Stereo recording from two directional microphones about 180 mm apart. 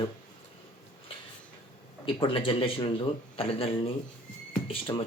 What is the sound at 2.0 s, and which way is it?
A man's voice, 30° left (ahead or behind).